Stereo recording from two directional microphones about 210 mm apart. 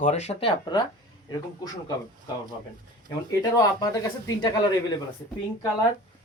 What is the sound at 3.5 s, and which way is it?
Speech, 15° left (ahead or behind).